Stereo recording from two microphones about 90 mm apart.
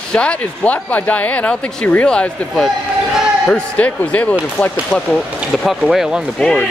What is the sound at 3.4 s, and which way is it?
Speech, 15° left (ahead or behind).